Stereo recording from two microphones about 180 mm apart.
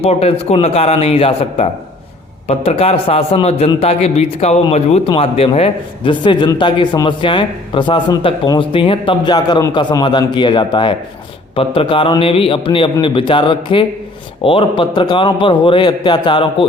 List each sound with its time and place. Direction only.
0.0 s a man's voice: 35° left (ahead or behind)